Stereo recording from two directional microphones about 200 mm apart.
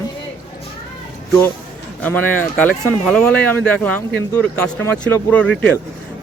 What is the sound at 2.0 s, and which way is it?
A man's voice, 10° left (ahead or behind).